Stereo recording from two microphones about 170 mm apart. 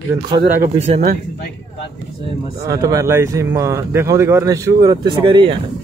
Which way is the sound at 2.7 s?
20° right (ahead or behind).